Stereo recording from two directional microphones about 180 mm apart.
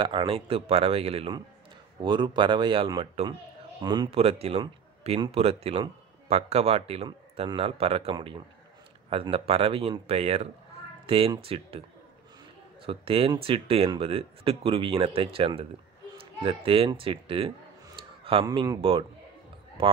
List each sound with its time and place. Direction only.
0.0 s speech: 30° right (ahead or behind)
12.8 s speech: 30° right (ahead or behind)